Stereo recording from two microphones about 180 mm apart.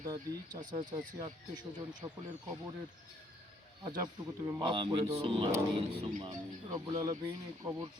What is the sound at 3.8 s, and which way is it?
Speech, 20° right (ahead or behind).